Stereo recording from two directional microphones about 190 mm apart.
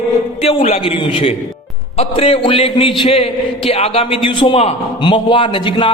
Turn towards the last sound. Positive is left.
turn(degrees=25)  # may be behind; listen again after turning